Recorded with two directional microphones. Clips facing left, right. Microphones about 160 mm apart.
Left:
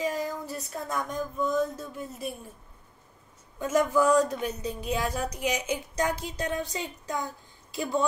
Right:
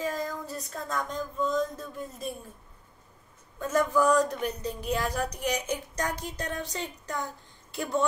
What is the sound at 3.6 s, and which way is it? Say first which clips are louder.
A woman's voice: left 1 dB; 10° left (ahead or behind).